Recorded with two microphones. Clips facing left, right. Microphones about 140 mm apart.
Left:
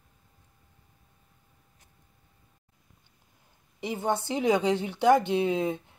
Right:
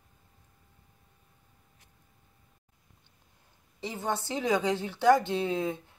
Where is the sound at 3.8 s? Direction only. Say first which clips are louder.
Left 4 dB; 15° left (ahead or behind).